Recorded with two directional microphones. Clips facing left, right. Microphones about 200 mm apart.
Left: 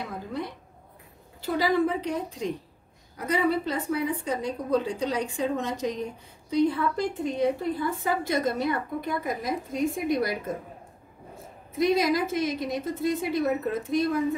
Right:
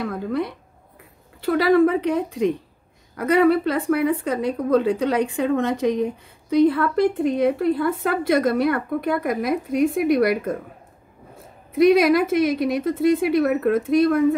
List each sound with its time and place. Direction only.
0.0 s a sound: 70° right (ahead or behind)
1.4 s speech: 60° right (ahead or behind)
11.9 s speech: 70° right (ahead or behind)